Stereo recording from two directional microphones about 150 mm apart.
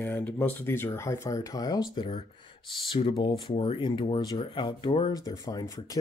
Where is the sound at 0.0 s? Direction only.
15° left (ahead or behind).